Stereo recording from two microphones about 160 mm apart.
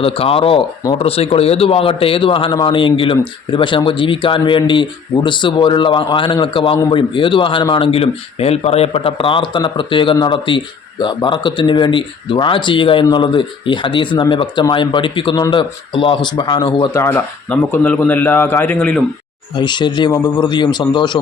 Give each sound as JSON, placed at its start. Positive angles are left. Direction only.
{"t": 0.0, "sound": "a man's voice", "side_deg": 35}
{"t": 17.0, "sound": "a man's voice", "side_deg": 10}
{"t": 19.5, "sound": "speech", "side_deg": 30}